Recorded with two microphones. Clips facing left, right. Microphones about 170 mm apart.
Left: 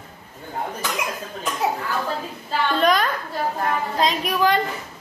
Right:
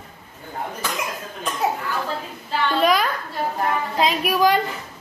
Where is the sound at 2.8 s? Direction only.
Centre (ahead or behind).